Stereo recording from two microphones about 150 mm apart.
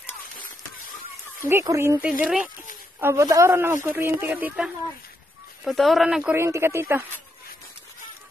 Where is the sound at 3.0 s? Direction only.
20° right (ahead or behind); by 6.4 s 5° right (ahead or behind).